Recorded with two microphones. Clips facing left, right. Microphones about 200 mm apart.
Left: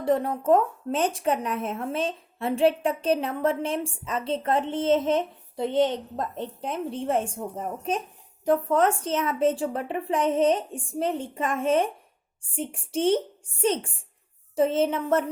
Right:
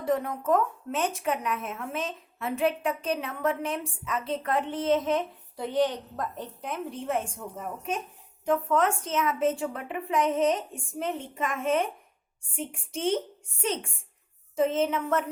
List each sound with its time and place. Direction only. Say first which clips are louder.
0.0 s a woman's voice: left 4 dB; 30° left (ahead or behind)